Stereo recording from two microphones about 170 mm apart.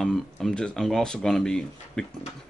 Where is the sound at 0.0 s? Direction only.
Centre (ahead or behind).